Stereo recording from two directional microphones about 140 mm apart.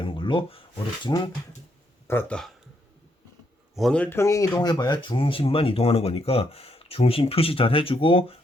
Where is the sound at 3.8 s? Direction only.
5° left (ahead or behind).